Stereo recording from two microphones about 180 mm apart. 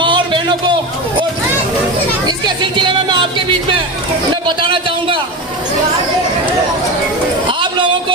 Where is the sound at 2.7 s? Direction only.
25° right (ahead or behind).